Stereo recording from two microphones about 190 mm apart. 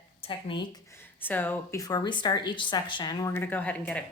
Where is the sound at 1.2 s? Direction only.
10° left (ahead or behind).